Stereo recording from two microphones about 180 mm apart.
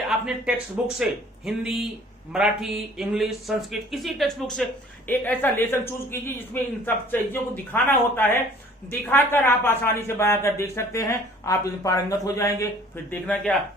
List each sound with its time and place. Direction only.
0.1 s speech: 5° right (ahead or behind); by 12.6 s 20° left (ahead or behind)
13.1 s speech: 10° left (ahead or behind)